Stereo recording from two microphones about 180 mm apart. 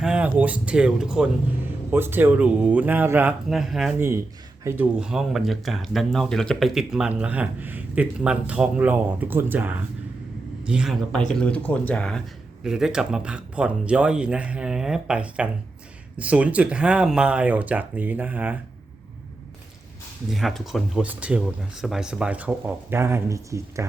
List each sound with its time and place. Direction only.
0.0 s speech: 5° right (ahead or behind)
11.3 s speech: 5° left (ahead or behind); by 18.5 s 10° right (ahead or behind)
20.3 s speech: centre (ahead or behind); by 23.8 s 15° right (ahead or behind)